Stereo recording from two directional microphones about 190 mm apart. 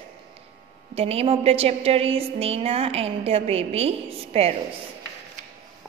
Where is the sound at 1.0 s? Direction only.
30° right (ahead or behind).